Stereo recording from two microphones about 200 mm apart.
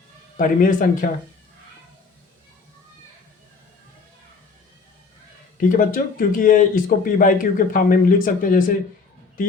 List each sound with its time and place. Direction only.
0.3 s speech: 45° left (ahead or behind)
5.5 s speech: 40° left (ahead or behind)